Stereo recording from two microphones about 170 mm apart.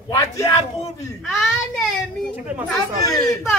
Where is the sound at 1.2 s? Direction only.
Centre (ahead or behind).